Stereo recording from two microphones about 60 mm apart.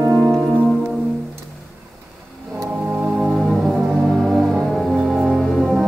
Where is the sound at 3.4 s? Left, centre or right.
Centre.